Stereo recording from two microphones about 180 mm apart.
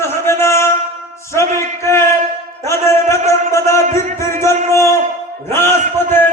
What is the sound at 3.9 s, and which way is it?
Music, 15° left (ahead or behind).